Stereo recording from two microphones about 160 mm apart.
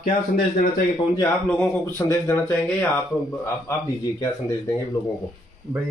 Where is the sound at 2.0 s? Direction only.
15° left (ahead or behind).